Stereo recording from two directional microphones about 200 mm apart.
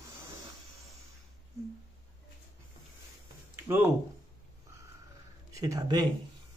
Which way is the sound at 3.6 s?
10° right (ahead or behind).